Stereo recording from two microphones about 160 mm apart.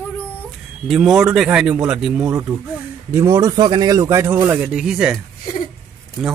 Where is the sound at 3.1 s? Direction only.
20° right (ahead or behind).